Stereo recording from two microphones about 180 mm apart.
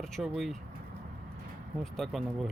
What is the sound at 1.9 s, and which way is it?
Speech, centre (ahead or behind).